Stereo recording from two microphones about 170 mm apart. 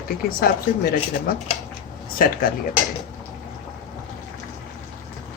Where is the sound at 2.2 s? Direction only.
60° left (ahead or behind).